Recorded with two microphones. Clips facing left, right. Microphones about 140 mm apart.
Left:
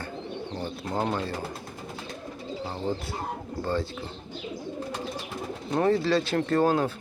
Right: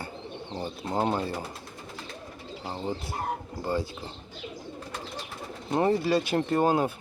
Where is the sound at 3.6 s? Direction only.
10° right (ahead or behind).